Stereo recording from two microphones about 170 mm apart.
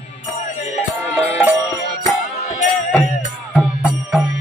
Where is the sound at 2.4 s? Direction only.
45° left (ahead or behind).